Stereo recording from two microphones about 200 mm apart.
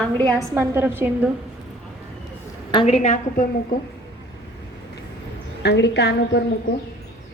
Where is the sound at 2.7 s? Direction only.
30° left (ahead or behind).